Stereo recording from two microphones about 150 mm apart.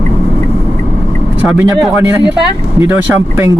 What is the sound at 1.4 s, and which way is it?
Speech, 10° right (ahead or behind).